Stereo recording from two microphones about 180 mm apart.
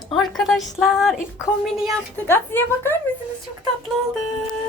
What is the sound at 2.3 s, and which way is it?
Speech, 10° left (ahead or behind).